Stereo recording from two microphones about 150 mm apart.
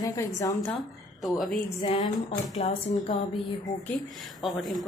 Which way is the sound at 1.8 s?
35° left (ahead or behind).